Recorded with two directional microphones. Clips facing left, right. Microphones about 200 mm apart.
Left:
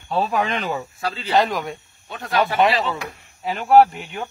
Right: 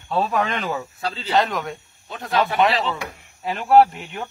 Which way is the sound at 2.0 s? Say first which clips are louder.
Even; 25° right (ahead or behind).